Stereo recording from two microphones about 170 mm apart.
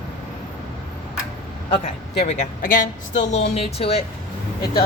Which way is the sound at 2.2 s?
45° left (ahead or behind).